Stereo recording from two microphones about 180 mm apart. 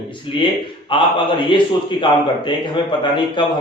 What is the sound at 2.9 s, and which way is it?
Speech, 25° left (ahead or behind).